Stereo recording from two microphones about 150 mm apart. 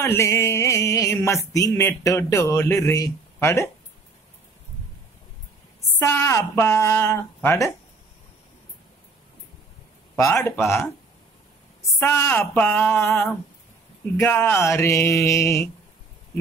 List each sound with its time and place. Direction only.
0.0 s music: 20° left (ahead or behind)
5.9 s speech: 15° left (ahead or behind)
10.1 s speech: 20° left (ahead or behind)
12.0 s speech: 15° left (ahead or behind)
14.1 s mantra: 15° left (ahead or behind)